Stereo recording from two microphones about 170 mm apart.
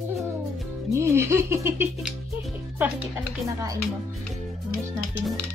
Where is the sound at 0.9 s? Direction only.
15° right (ahead or behind).